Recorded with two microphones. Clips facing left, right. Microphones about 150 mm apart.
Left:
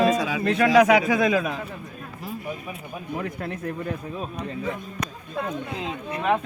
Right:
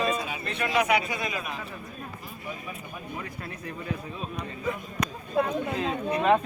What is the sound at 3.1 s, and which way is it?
Speech, 65° left (ahead or behind).